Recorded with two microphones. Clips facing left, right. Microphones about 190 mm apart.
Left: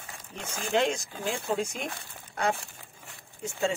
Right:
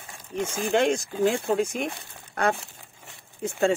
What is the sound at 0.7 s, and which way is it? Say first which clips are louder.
Speech: right 3 dB; 55° right (ahead or behind).